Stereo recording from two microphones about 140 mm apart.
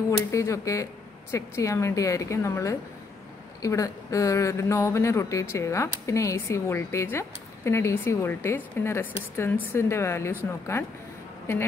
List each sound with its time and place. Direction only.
0.3 s speech: 20° left (ahead or behind)